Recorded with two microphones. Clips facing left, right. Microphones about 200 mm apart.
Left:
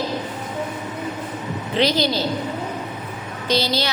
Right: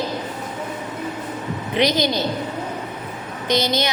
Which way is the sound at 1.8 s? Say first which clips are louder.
Even; 20° right (ahead or behind).